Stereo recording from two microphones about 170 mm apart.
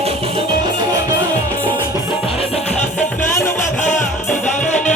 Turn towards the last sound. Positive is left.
turn(degrees=45)  # may be behind; listen again after turning